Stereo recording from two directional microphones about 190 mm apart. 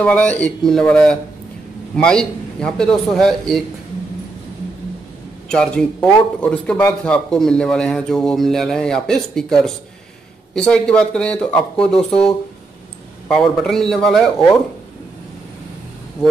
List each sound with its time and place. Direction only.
0.0 s a man's voice: 5° left (ahead or behind)
5.5 s a man's voice: 5° left (ahead or behind)